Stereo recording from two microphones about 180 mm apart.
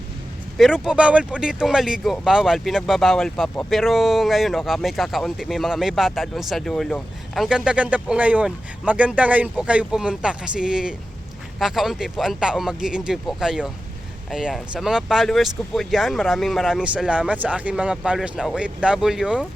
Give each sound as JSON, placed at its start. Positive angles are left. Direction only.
{"t": 0.5, "sound": "speech", "side_deg": 0}